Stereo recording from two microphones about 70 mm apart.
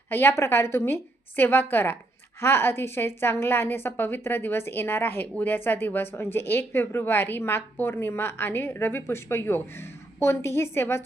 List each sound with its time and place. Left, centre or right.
0.1 s a woman's voice: left